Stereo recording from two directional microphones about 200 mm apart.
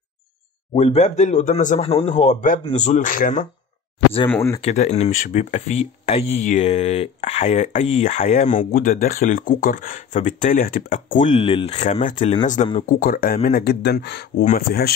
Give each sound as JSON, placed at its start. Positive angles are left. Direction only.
{"t": 0.7, "sound": "speech", "side_deg": 35}
{"t": 4.3, "sound": "speech", "side_deg": 10}
{"t": 4.6, "sound": "speech", "side_deg": 35}
{"t": 14.4, "sound": "speech", "side_deg": 45}